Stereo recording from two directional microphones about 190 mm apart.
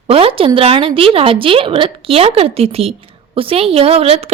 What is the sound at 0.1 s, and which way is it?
A woman's voice, 30° right (ahead or behind).